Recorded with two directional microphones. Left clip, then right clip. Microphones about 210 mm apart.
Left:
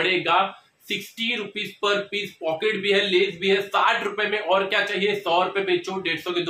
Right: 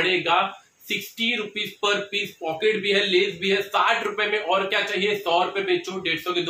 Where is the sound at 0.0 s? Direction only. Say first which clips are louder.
Even; 15° left (ahead or behind).